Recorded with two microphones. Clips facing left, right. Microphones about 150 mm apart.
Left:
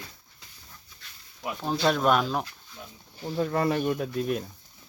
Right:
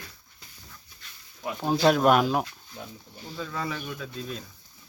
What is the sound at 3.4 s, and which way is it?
Speech, 60° left (ahead or behind).